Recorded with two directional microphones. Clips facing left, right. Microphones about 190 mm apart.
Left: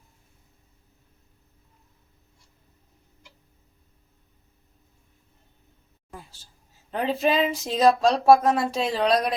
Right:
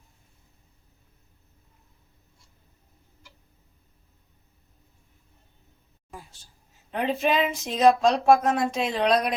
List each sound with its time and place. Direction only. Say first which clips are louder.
7.0 s speech: left 1 dB; 35° left (ahead or behind)